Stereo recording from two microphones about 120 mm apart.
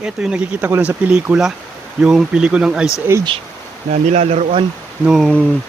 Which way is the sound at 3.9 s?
70° right (ahead or behind).